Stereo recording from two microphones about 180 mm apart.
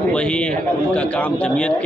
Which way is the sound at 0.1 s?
5° left (ahead or behind).